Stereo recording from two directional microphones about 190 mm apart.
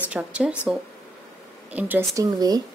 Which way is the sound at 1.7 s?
10° right (ahead or behind).